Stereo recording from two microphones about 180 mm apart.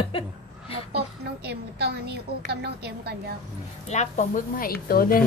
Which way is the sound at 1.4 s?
65° right (ahead or behind).